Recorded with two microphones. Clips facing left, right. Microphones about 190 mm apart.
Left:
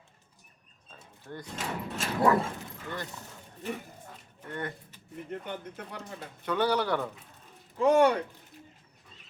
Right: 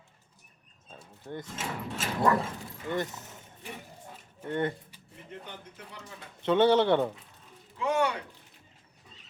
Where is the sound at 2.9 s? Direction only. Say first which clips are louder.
Right 8 dB; 20° right (ahead or behind).